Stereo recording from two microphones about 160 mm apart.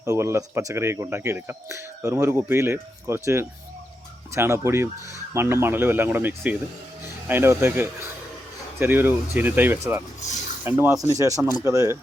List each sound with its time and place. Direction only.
0.0 s speech: 20° right (ahead or behind)